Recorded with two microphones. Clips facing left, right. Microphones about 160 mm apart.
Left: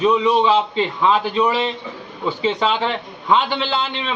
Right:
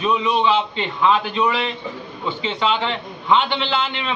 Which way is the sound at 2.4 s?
40° left (ahead or behind).